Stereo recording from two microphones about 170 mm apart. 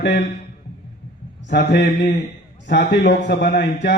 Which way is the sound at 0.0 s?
85° left.